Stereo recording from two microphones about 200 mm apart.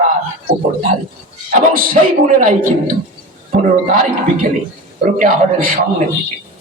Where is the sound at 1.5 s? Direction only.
40° right (ahead or behind).